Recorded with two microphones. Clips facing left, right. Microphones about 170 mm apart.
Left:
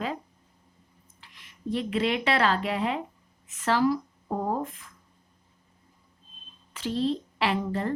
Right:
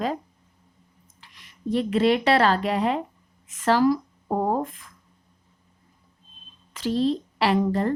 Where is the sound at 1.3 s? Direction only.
40° right (ahead or behind).